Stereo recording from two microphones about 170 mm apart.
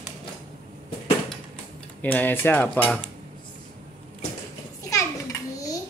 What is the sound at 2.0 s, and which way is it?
Speech, 10° left (ahead or behind).